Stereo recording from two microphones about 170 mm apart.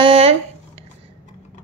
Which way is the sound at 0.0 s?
35° right (ahead or behind).